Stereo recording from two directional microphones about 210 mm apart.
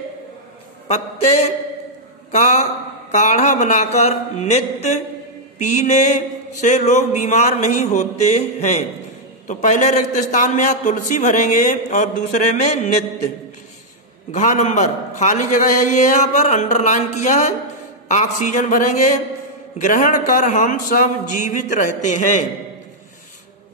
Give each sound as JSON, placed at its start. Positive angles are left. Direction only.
{"t": 2.3, "sound": "mantra", "side_deg": 35}
{"t": 14.3, "sound": "mantra", "side_deg": 35}